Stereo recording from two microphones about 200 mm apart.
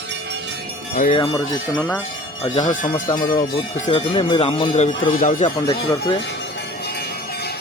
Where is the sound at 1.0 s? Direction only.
30° left (ahead or behind).